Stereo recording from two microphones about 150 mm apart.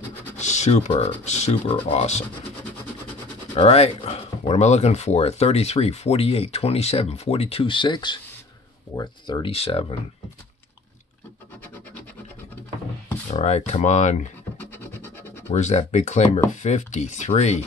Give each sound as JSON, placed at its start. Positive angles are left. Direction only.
{"t": 0.4, "sound": "speech", "side_deg": 50}
{"t": 3.5, "sound": "speech", "side_deg": 40}
{"t": 9.5, "sound": "speech", "side_deg": 40}
{"t": 13.3, "sound": "speech", "side_deg": 45}
{"t": 14.6, "sound": "scratch", "side_deg": 15}
{"t": 15.5, "sound": "speech", "side_deg": 50}